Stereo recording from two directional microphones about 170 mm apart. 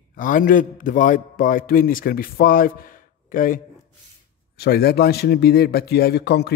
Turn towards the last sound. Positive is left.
turn(degrees=75)  # may be behind; listen again after turning